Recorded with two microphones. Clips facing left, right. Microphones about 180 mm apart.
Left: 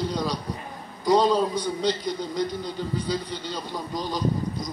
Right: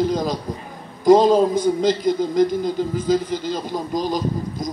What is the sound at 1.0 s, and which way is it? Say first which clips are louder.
Speech: right 7 dB; 45° right (ahead or behind).